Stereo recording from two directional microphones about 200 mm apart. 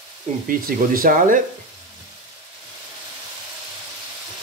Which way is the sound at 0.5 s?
45° right (ahead or behind).